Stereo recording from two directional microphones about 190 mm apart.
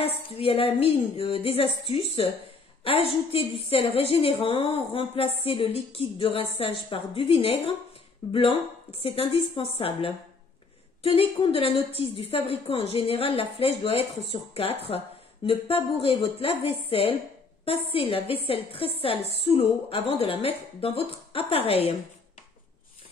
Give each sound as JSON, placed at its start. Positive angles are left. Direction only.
{"t": 0.0, "sound": "a woman's voice", "side_deg": 30}